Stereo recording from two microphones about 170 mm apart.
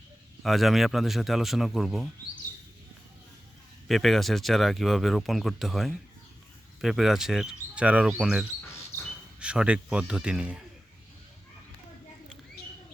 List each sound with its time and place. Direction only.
0.4 s speech: centre (ahead or behind)
3.8 s speech: centre (ahead or behind)